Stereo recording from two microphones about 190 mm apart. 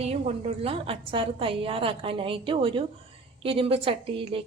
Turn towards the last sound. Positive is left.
turn(degrees=-30)  # may be behind; listen again after turning